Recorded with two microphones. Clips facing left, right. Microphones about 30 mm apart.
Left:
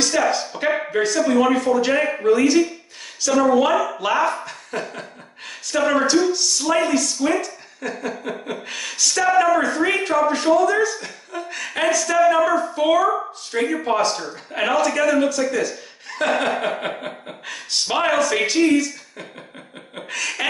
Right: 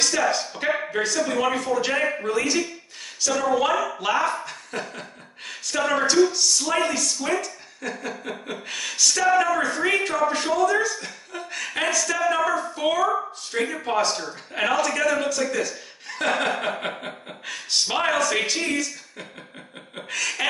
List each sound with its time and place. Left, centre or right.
0.0 s a sound: centre
1.3 s a woman's voice: centre
16.1 s chuckle: centre
17.0 s a woman's voice: centre